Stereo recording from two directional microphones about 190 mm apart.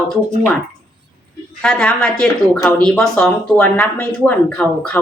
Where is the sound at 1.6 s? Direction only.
5° left (ahead or behind).